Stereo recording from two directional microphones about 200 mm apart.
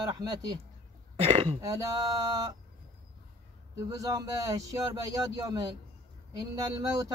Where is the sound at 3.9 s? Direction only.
15° right (ahead or behind).